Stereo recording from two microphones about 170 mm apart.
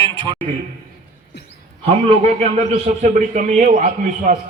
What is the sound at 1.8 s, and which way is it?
A man's voice, 35° right (ahead or behind).